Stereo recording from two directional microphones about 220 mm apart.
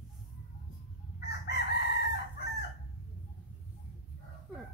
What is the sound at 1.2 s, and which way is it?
Chicken, 50° left (ahead or behind).